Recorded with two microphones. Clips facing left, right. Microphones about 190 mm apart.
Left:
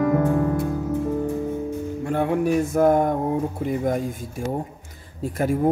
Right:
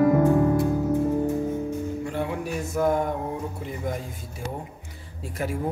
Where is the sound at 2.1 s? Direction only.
55° left (ahead or behind).